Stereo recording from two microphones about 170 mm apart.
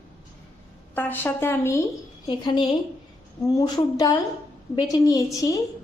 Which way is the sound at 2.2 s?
25° left (ahead or behind).